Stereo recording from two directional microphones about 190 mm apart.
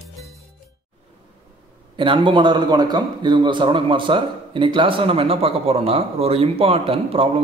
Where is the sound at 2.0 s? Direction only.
25° right (ahead or behind).